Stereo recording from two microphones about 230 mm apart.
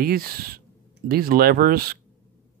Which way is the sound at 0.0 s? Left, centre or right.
Right.